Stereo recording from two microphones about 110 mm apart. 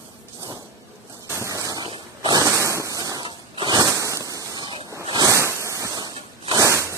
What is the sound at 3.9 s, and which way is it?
Firecracker, 30° right (ahead or behind).